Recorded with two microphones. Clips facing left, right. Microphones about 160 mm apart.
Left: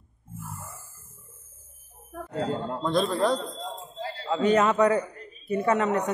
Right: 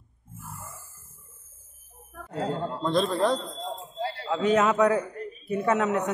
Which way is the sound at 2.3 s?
Centre (ahead or behind).